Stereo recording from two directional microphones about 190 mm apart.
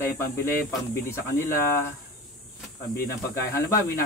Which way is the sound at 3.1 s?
15° left (ahead or behind).